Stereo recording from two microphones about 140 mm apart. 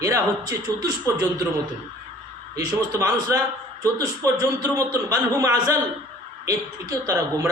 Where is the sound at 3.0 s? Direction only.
20° right (ahead or behind).